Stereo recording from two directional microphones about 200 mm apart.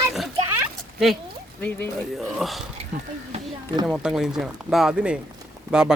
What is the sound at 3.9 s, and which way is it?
Speech, centre (ahead or behind).